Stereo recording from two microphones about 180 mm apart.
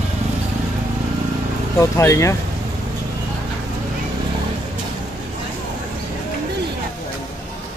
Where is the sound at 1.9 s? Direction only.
15° left (ahead or behind).